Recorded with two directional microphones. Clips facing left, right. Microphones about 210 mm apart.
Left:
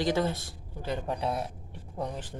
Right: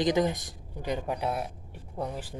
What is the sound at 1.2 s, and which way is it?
Speech, 5° right (ahead or behind).